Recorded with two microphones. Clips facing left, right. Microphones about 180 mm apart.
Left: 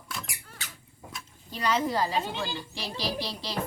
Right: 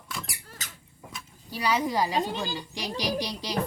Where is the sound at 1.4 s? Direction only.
10° right (ahead or behind).